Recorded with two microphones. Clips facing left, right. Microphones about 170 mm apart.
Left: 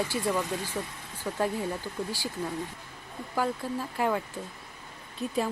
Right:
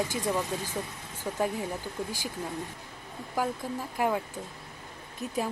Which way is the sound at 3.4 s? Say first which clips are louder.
Left 1 dB; 10° right (ahead or behind).